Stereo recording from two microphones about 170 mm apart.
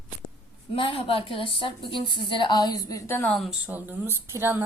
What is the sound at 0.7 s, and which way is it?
A woman's voice, 30° left (ahead or behind).